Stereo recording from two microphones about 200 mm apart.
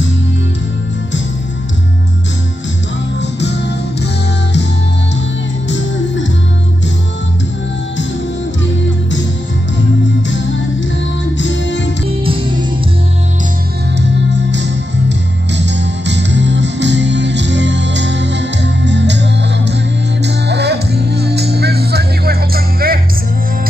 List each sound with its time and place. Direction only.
3.2 s music: 60° left (ahead or behind)
11.3 s music: 65° left (ahead or behind)
13.9 s music: 60° right (ahead or behind)